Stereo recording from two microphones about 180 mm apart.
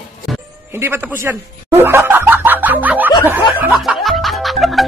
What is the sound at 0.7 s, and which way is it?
Snicker, 15° right (ahead or behind).